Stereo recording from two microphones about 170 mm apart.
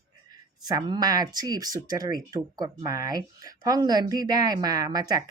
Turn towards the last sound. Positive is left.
turn(degrees=-20)  # may be behind; listen again after turning